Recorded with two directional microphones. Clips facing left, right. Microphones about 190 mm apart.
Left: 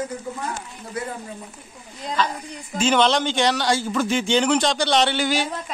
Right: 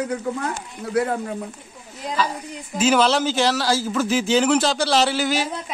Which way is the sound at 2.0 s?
10° right (ahead or behind).